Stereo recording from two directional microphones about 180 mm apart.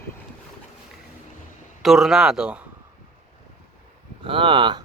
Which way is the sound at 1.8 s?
Centre (ahead or behind).